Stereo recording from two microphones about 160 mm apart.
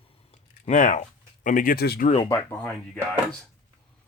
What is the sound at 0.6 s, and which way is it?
Speech, 50° left (ahead or behind).